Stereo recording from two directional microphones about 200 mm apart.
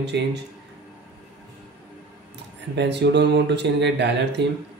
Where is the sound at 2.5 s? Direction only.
60° right (ahead or behind).